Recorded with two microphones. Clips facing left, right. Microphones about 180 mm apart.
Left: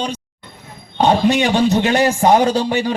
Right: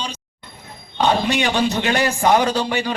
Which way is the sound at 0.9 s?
40° left (ahead or behind).